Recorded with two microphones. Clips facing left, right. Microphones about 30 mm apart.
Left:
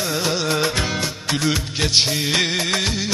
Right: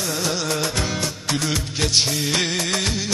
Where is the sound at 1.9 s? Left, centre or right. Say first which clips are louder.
Left 3 dB; left.